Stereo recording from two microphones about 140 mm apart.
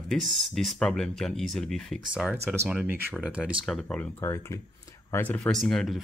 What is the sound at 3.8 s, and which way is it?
Speech, 15° left (ahead or behind).